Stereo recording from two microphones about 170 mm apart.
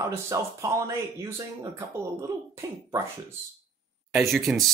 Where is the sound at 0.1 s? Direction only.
15° right (ahead or behind).